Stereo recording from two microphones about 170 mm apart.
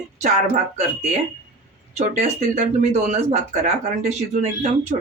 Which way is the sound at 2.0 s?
40° right (ahead or behind).